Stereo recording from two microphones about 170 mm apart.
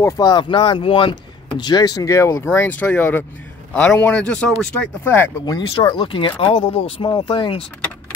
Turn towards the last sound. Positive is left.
turn(degrees=30)  # may be behind; listen again after turning